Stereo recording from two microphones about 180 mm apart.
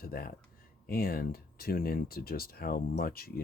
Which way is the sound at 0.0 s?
55° left (ahead or behind).